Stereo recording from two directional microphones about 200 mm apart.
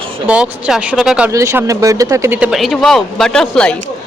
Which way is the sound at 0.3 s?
5° right (ahead or behind).